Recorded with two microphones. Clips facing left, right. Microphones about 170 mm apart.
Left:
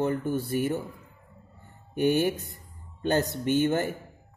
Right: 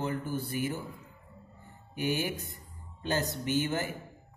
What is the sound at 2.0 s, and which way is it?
Speech, 50° left (ahead or behind).